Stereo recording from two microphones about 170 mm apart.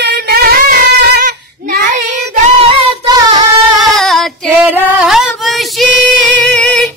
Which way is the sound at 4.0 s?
Centre (ahead or behind).